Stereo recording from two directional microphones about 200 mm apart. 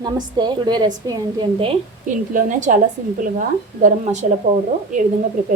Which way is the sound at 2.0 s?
40° right (ahead or behind).